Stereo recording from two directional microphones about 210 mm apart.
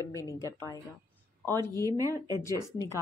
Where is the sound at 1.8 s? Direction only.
15° right (ahead or behind).